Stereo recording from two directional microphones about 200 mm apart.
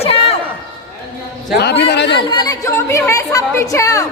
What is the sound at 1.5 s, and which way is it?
Speech, 60° left (ahead or behind).